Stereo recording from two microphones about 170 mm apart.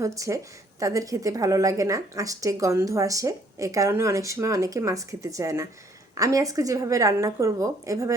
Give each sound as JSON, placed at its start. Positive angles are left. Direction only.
{"t": 0.0, "sound": "speech", "side_deg": -20}